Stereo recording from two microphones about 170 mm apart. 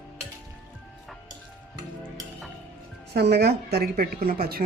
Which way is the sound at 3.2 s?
75° right (ahead or behind).